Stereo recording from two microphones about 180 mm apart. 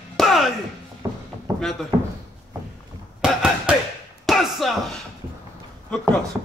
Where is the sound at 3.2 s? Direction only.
5° right (ahead or behind).